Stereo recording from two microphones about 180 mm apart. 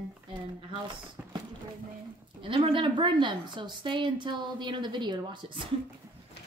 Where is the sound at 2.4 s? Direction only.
30° right (ahead or behind).